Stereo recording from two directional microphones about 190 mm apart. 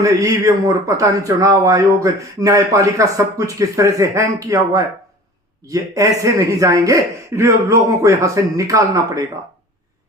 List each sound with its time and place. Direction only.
0.0 s speech: 15° right (ahead or behind)